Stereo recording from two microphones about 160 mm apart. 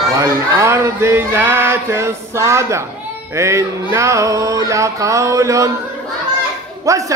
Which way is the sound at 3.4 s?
20° right (ahead or behind).